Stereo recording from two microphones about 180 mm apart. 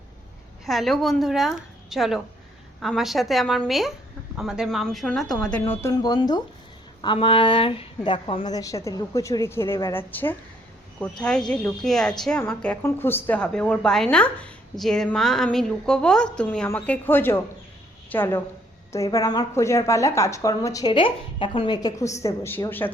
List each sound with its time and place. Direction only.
0.6 s a woman's voice: centre (ahead or behind)